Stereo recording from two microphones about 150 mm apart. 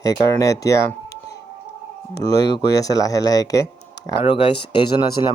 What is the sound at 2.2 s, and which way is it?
Speech, 25° left (ahead or behind).